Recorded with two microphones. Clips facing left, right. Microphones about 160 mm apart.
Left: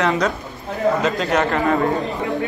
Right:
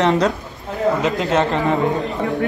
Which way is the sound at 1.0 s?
20° right (ahead or behind).